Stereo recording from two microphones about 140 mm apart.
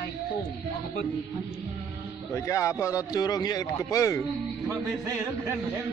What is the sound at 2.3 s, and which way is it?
A man's voice, 20° left (ahead or behind).